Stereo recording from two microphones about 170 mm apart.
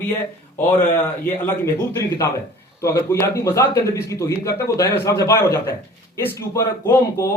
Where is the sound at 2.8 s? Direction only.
15° left (ahead or behind).